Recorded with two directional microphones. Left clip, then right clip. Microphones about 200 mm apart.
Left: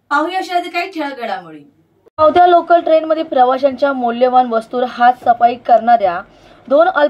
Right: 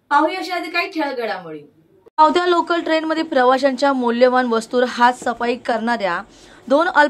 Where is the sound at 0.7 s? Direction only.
Centre (ahead or behind).